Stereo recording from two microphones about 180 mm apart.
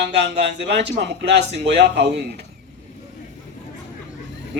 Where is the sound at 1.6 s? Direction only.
70° right (ahead or behind).